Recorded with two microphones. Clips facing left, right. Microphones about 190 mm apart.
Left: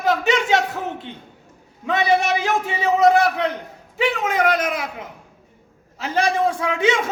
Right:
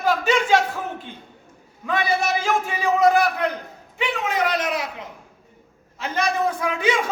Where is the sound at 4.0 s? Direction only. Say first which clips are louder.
Left 4 dB; 45° left (ahead or behind).